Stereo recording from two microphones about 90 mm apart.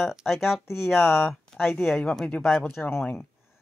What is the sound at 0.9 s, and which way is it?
Speech, 25° left (ahead or behind).